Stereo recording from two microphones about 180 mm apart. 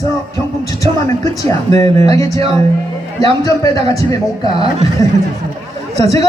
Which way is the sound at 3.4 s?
20° left (ahead or behind).